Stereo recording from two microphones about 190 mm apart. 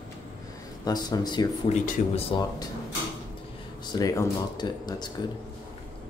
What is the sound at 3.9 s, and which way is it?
Speech, 20° left (ahead or behind).